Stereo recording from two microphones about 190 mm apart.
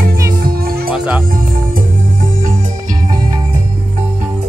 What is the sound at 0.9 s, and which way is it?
Music, 5° right (ahead or behind).